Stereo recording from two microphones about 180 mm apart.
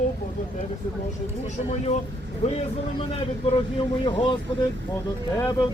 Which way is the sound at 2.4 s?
35° left (ahead or behind).